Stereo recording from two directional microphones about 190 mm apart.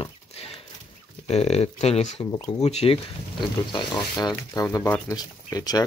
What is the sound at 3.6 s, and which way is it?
Speech, 20° left (ahead or behind).